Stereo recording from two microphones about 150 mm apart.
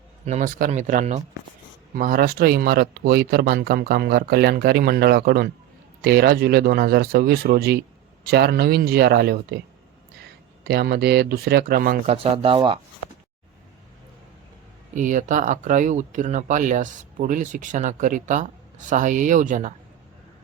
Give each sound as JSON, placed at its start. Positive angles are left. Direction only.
{"t": 0.3, "sound": "speech", "side_deg": -55}
{"t": 2.0, "sound": "speech", "side_deg": -75}
{"t": 10.6, "sound": "speech", "side_deg": -90}
{"t": 12.0, "sound": "speech", "side_deg": -40}
{"t": 14.9, "sound": "speech", "side_deg": -55}